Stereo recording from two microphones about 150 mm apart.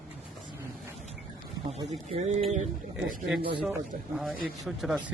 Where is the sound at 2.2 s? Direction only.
50° right (ahead or behind).